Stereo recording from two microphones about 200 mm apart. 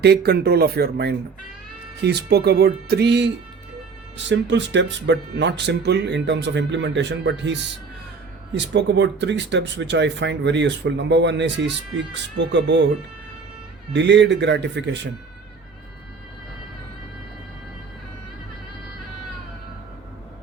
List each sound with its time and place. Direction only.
0.0 s speech: 55° right (ahead or behind)
4.3 s speech: 65° right (ahead or behind)
13.9 s speech: 60° right (ahead or behind)